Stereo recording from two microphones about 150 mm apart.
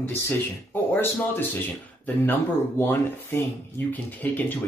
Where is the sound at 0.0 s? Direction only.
15° left (ahead or behind).